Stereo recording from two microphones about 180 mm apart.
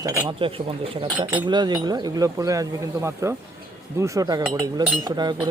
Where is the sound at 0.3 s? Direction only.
30° right (ahead or behind).